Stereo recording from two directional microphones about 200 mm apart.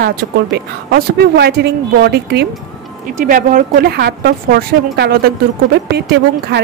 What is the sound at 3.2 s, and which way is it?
A woman's voice, 40° right (ahead or behind).